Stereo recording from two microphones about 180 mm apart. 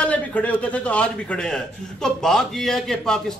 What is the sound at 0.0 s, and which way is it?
Speech, 10° left (ahead or behind).